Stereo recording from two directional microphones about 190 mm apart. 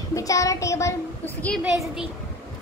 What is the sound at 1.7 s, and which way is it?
Speech, 5° right (ahead or behind).